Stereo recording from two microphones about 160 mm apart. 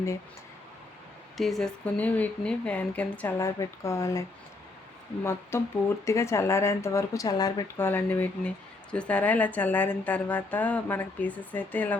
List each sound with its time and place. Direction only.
1.4 s speech: centre (ahead or behind); by 7.6 s 25° left (ahead or behind)
7.8 s speech: 10° left (ahead or behind)